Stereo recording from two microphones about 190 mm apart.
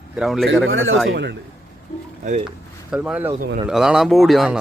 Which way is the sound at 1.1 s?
70° right (ahead or behind).